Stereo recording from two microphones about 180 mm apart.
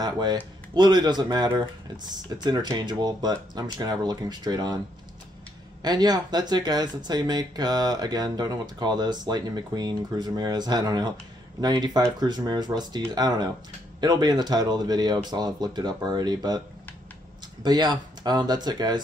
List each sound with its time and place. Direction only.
0.0 s speech: 25° right (ahead or behind)
5.8 s speech: 20° right (ahead or behind)
17.6 s speech: 20° right (ahead or behind)